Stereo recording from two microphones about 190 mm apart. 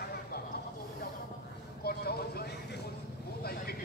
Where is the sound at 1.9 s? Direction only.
55° left (ahead or behind).